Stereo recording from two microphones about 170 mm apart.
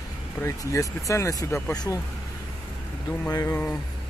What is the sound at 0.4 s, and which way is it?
A man's voice, 20° left (ahead or behind).